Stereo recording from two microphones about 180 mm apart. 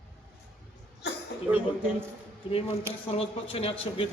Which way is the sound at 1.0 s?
70° left (ahead or behind).